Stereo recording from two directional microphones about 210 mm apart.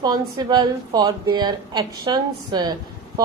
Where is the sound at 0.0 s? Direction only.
20° right (ahead or behind).